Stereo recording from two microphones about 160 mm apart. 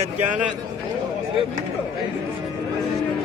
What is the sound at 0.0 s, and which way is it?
Speech, 50° right (ahead or behind).